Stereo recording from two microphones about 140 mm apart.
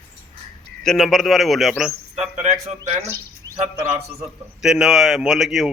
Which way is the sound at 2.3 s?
55° right (ahead or behind).